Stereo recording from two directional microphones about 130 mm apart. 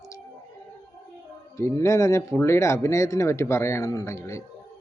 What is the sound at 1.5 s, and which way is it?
Speech, 20° left (ahead or behind).